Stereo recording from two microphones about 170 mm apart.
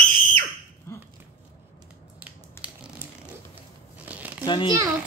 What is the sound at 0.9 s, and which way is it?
Dog, 15° left (ahead or behind).